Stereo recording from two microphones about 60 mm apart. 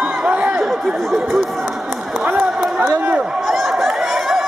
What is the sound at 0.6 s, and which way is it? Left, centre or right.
Chatter, centre.